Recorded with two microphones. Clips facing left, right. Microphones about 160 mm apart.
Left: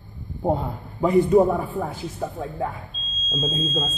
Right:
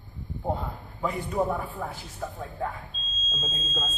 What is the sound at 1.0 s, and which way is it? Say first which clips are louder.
A man's voice: left 11 dB; 25° left (ahead or behind).